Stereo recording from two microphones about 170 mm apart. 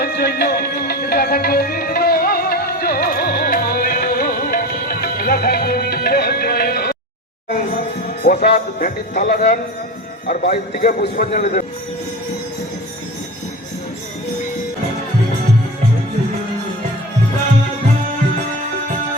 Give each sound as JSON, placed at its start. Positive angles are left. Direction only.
{"t": 0.0, "sound": "music", "side_deg": 70}
{"t": 7.5, "sound": "a man's voice", "side_deg": 55}